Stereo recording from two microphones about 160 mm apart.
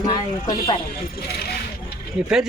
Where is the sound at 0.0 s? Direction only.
25° left (ahead or behind).